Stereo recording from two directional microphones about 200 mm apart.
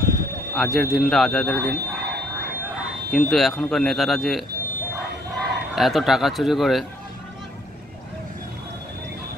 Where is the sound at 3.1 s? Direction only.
Centre (ahead or behind).